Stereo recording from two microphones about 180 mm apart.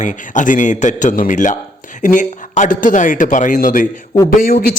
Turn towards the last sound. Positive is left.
turn(degrees=50)  # may be behind; listen again after turning